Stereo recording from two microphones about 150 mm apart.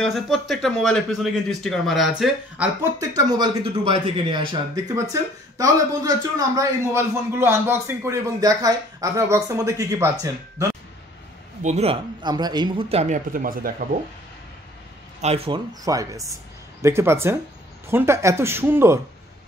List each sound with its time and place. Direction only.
0.0 s speech: centre (ahead or behind)
3.0 s speech: 25° right (ahead or behind)
11.6 s speech: 45° right (ahead or behind); by 12.8 s 30° right (ahead or behind)
12.9 s speech: 55° right (ahead or behind); by 13.8 s 70° right (ahead or behind)
15.2 s speech: 40° right (ahead or behind)
15.8 s speech: 25° right (ahead or behind)